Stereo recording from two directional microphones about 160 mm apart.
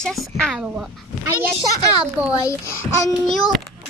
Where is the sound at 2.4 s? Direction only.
20° left (ahead or behind).